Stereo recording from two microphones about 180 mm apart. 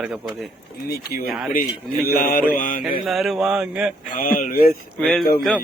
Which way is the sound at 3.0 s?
Centre (ahead or behind).